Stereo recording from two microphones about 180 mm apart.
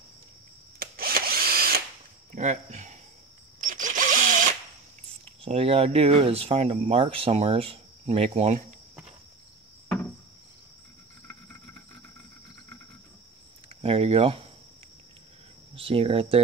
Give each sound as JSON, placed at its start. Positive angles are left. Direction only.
{"t": 0.7, "sound": "drill", "side_deg": -55}
{"t": 2.3, "sound": "speech", "side_deg": -40}
{"t": 3.6, "sound": "drill", "side_deg": -45}
{"t": 5.4, "sound": "speech", "side_deg": -35}
{"t": 13.7, "sound": "speech", "side_deg": -35}
{"t": 15.7, "sound": "speech", "side_deg": -30}